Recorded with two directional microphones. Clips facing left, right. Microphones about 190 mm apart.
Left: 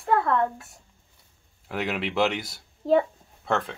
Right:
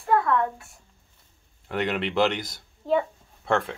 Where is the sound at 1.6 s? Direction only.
5° left (ahead or behind).